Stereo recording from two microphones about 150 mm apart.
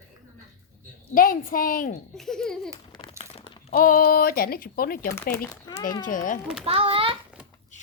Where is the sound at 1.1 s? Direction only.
65° left (ahead or behind).